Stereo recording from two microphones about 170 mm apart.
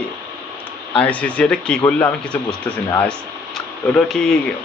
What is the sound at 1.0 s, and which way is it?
Speech, 10° left (ahead or behind).